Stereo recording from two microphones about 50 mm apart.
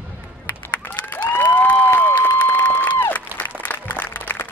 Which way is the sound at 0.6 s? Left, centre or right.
Left.